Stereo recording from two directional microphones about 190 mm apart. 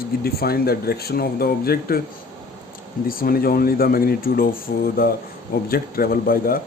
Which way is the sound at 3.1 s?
50° left (ahead or behind).